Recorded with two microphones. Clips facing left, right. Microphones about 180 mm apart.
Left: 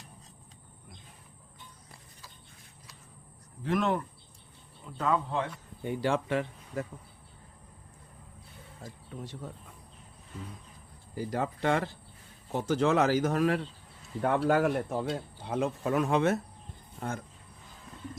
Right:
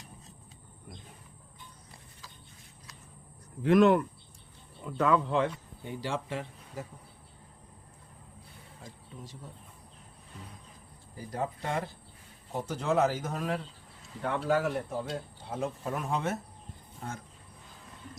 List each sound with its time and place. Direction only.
3.6 s speech: 65° right (ahead or behind)
4.8 s speech: 85° right
5.8 s speech: 55° left (ahead or behind)
8.8 s speech: 65° left (ahead or behind)
11.1 s speech: 90° left
14.2 s speech: 55° left (ahead or behind)
15.4 s speech: 75° left (ahead or behind)
17.0 s speech: 65° left (ahead or behind)